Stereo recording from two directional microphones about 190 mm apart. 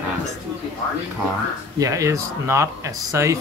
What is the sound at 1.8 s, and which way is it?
Speech, 15° right (ahead or behind).